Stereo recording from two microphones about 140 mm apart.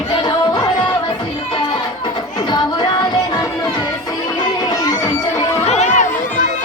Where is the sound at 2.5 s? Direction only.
35° left (ahead or behind).